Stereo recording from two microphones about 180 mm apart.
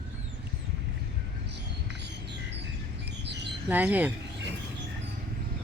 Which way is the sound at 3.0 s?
70° right (ahead or behind).